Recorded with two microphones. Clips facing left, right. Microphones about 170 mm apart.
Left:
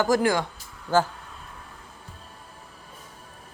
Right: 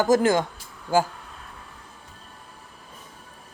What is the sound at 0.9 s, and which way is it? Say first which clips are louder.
Speech: even; 10° right (ahead or behind).